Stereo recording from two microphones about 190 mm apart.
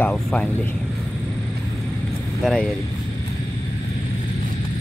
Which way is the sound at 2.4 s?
5° left (ahead or behind).